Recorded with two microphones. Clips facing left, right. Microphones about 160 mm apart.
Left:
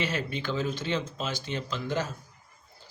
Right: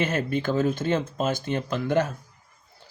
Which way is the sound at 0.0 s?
50° right (ahead or behind).